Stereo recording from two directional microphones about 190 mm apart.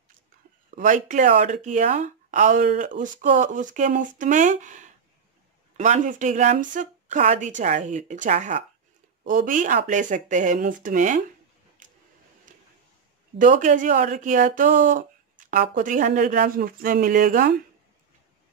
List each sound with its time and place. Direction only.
0.7 s speech: 40° right (ahead or behind)
11.8 s a sound: 45° right (ahead or behind)
13.4 s speech: 45° right (ahead or behind)